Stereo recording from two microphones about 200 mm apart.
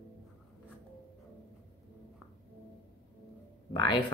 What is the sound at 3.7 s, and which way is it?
Speech, 25° left (ahead or behind).